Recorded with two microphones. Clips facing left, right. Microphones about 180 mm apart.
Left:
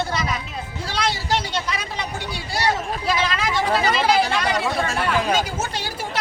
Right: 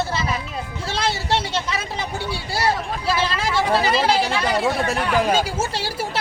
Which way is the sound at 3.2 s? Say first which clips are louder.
Right 1 dB; 30° right (ahead or behind).